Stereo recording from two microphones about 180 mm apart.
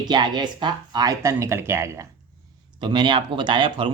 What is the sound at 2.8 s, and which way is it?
Speech, 25° right (ahead or behind).